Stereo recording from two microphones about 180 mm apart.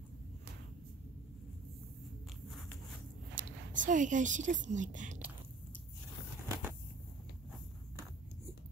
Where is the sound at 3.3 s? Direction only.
45° right (ahead or behind).